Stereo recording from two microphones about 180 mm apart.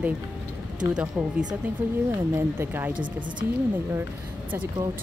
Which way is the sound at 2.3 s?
10° right (ahead or behind).